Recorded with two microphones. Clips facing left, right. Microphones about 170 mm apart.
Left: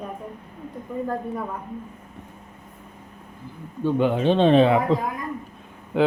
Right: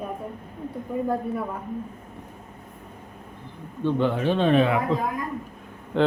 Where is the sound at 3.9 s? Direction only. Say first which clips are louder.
Left 3 dB; 15° left (ahead or behind).